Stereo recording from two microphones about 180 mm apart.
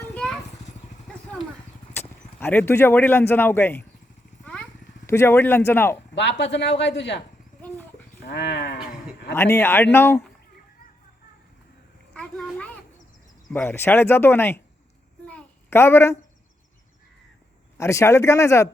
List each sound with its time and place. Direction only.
0.0 s a sound: 5° left (ahead or behind)
2.0 s speech: 10° left (ahead or behind)
5.0 s speech: 15° left (ahead or behind)
6.1 s speech: 85° left
8.2 s livestock: 75° left (ahead or behind)
9.3 s speech: 15° left (ahead or behind)
12.1 s a sound: 5° left (ahead or behind)
13.5 s speech: 10° left (ahead or behind)
15.3 s a sound: 10° left (ahead or behind)
17.7 s speech: 15° left (ahead or behind)